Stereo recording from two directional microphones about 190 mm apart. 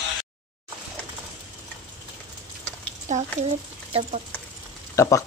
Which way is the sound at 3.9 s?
30° right (ahead or behind).